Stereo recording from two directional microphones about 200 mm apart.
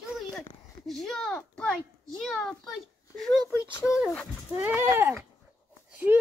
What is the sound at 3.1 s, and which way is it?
Speech, centre (ahead or behind).